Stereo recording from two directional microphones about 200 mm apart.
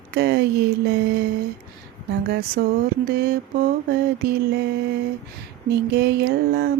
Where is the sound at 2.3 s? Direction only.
50° right (ahead or behind).